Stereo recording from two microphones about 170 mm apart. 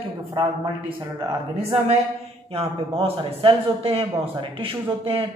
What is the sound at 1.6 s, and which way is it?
A man's voice, 35° right (ahead or behind).